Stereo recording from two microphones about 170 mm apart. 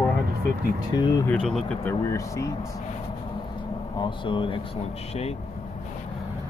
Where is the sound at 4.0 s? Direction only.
30° left (ahead or behind).